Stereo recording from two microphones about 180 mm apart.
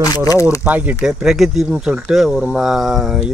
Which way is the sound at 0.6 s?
10° right (ahead or behind).